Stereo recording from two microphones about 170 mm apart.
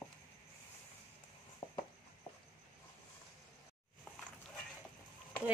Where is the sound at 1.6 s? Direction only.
20° left (ahead or behind).